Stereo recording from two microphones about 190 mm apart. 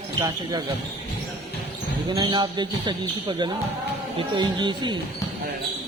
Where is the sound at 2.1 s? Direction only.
25° right (ahead or behind).